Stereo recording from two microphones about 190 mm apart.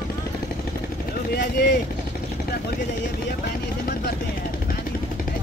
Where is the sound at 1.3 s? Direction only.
55° left (ahead or behind).